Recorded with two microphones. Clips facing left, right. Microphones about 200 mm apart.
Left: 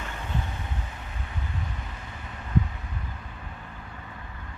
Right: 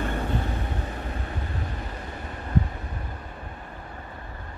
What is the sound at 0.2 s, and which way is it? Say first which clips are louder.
Vehicle: right 6 dB; 40° right (ahead or behind).